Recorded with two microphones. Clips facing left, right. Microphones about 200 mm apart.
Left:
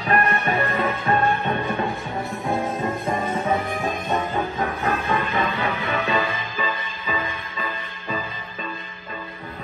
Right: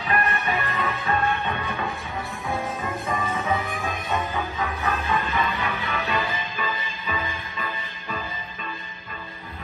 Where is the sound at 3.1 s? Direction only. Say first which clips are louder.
Left 3 dB; 50° left (ahead or behind).